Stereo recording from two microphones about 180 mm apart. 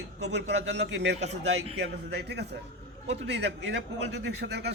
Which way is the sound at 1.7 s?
70° right (ahead or behind).